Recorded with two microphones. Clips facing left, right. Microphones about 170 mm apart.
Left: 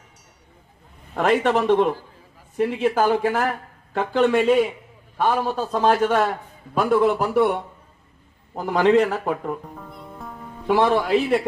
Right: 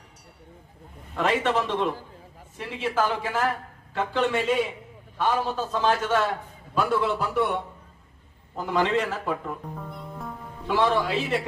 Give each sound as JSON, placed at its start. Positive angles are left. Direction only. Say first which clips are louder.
{"t": 1.1, "sound": "a man's voice", "louder": "left 5 dB", "side_deg": 50}
{"t": 9.6, "sound": "speech", "louder": "right 1 dB", "side_deg": 0}
{"t": 10.8, "sound": "a man's voice", "louder": "left 4 dB", "side_deg": 55}